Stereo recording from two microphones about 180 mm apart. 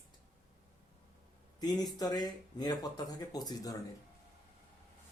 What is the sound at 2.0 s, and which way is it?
Speech, 20° left (ahead or behind).